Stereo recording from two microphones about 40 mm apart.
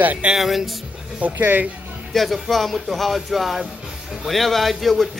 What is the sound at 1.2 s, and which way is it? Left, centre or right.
Speech, right.